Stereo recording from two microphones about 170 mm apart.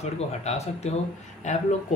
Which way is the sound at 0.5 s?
40° left (ahead or behind).